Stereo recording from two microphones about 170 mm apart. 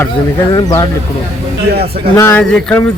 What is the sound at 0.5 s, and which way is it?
Speech, 25° left (ahead or behind).